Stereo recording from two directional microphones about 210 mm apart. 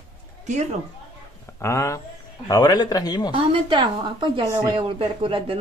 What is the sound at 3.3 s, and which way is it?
Speech, 20° right (ahead or behind).